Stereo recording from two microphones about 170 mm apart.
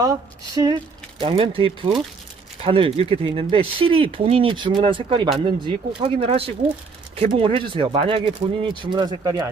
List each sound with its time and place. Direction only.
0.0 s speech: 20° right (ahead or behind)
1.2 s speech: 30° right (ahead or behind)